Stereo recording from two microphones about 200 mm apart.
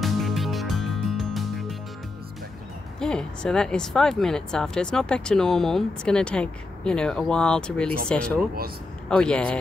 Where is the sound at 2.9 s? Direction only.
5° left (ahead or behind).